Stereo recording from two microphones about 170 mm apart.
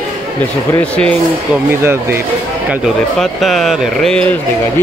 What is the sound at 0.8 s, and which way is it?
Speech, 5° left (ahead or behind).